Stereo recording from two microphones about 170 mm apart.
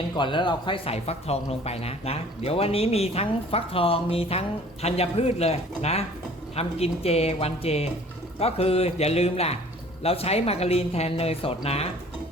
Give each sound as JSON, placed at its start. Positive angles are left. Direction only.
{"t": 0.2, "sound": "speech", "side_deg": 30}